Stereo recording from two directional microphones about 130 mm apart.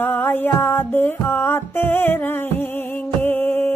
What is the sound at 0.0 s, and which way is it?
Music, 15° left (ahead or behind).